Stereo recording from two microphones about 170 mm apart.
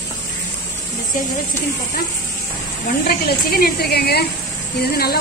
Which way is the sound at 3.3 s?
60° left (ahead or behind).